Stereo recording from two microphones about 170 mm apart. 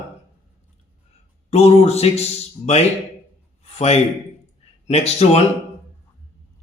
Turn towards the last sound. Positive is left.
turn(degrees=40)  # may be behind; listen again after turning